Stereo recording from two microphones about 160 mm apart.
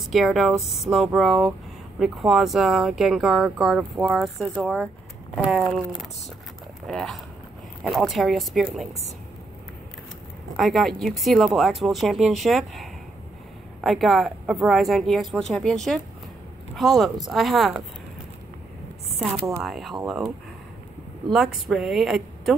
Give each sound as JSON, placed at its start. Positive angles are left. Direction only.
{"t": 0.0, "sound": "speech", "side_deg": 0}
{"t": 10.5, "sound": "speech", "side_deg": 0}
{"t": 19.6, "sound": "speech", "side_deg": 0}